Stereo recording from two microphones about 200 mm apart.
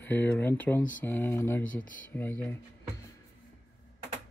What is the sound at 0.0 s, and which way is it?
Speech, 10° left (ahead or behind).